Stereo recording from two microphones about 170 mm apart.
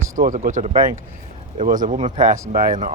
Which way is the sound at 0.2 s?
50° right (ahead or behind).